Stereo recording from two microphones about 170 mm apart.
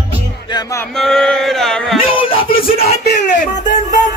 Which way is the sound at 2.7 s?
70° left (ahead or behind).